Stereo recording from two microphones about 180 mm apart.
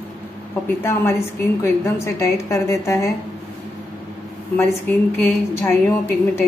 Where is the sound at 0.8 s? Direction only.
15° left (ahead or behind).